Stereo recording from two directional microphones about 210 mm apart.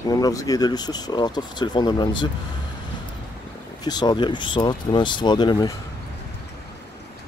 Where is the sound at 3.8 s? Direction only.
20° left (ahead or behind).